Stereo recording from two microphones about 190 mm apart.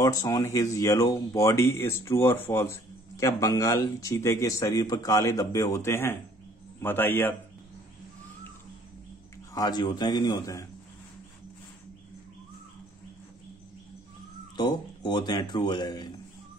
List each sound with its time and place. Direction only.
0.0 s speech: 20° left (ahead or behind)
9.5 s speech: 20° left (ahead or behind)
14.6 s speech: 20° left (ahead or behind)